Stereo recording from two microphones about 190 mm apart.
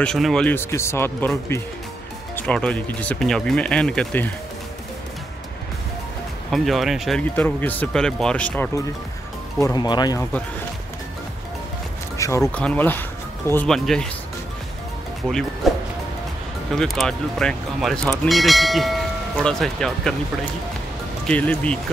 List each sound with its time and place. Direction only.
0.0 s speech: 5° left (ahead or behind)
6.5 s speech: centre (ahead or behind); by 10.2 s 20° left (ahead or behind)
12.2 s speech: 15° left (ahead or behind)
15.2 s speech: 5° left (ahead or behind)
15.6 s music: centre (ahead or behind)
16.7 s speech: centre (ahead or behind)
21.3 s speech: 5° left (ahead or behind)